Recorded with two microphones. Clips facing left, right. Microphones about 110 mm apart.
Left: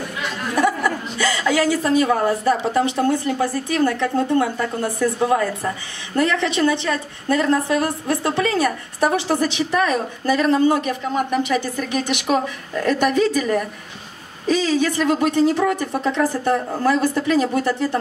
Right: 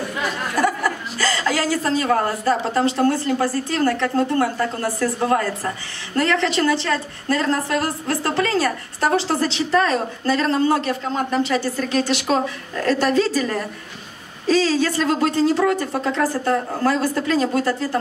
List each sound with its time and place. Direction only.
1.3 s a woman's voice: 15° left (ahead or behind)